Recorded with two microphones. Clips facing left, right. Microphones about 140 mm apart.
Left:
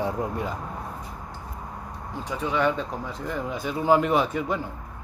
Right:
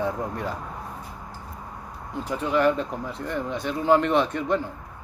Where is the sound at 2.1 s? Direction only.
Centre (ahead or behind).